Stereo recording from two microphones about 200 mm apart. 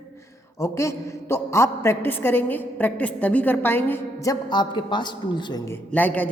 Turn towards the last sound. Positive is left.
turn(degrees=10)  # may be behind; listen again after turning